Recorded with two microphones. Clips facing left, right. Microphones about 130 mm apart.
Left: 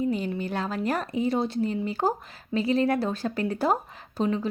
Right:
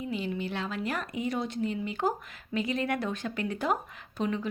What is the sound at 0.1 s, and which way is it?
Speech, 40° left (ahead or behind).